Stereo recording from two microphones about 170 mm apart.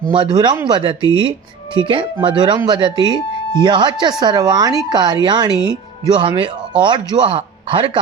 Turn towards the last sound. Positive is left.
turn(degrees=-30)  # may be behind; listen again after turning